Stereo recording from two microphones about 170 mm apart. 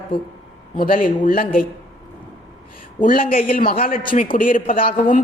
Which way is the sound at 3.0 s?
55° left (ahead or behind).